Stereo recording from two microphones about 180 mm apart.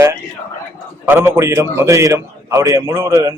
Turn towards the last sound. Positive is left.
turn(degrees=-15)  # may be behind; listen again after turning